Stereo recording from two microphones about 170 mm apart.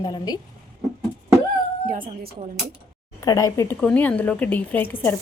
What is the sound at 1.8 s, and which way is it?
Speech, 60° right (ahead or behind).